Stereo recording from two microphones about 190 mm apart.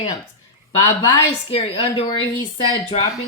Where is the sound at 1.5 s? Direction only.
25° left (ahead or behind).